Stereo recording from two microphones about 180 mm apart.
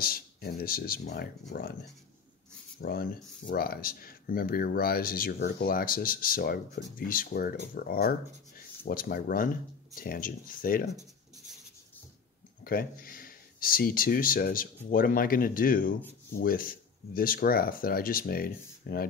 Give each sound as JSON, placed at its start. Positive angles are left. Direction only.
{"t": 0.0, "sound": "speech", "side_deg": 55}
{"t": 2.8, "sound": "speech", "side_deg": 55}
{"t": 12.6, "sound": "speech", "side_deg": 55}